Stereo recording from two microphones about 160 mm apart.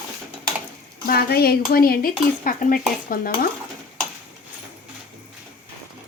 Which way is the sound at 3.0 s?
60° left (ahead or behind).